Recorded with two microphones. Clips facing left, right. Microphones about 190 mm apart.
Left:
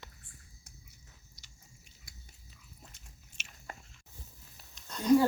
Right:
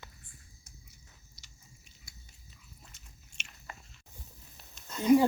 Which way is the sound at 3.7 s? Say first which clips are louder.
Left 2 dB; 45° left (ahead or behind).